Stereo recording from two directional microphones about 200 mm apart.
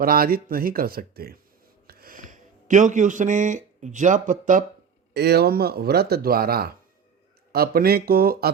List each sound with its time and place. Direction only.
0.0 s speech: 45° right (ahead or behind)
5.1 s speech: 55° right (ahead or behind)